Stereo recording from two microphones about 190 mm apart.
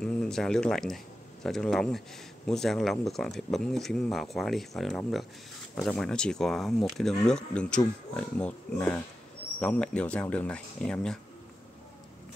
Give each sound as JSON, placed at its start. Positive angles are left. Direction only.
{"t": 0.0, "sound": "speech", "side_deg": 5}